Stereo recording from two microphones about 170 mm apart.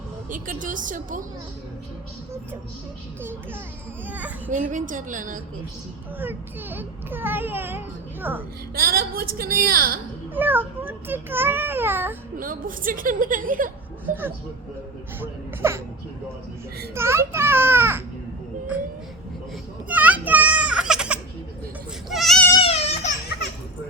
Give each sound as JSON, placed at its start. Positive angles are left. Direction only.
{"t": 0.3, "sound": "a woman's voice", "side_deg": -50}
{"t": 4.0, "sound": "a child's voice", "side_deg": -10}
{"t": 4.5, "sound": "a woman's voice", "side_deg": -50}
{"t": 6.1, "sound": "a child's voice", "side_deg": -10}
{"t": 8.7, "sound": "a woman's voice", "side_deg": -60}
{"t": 10.3, "sound": "a child's voice", "side_deg": -10}
{"t": 12.4, "sound": "a woman's voice", "side_deg": -55}
{"t": 15.2, "sound": "a child's voice", "side_deg": -15}
{"t": 16.9, "sound": "a child's voice", "side_deg": -15}
{"t": 19.9, "sound": "children playing", "side_deg": -10}
{"t": 22.1, "sound": "goat", "side_deg": 0}
{"t": 22.6, "sound": "baby cry", "side_deg": 35}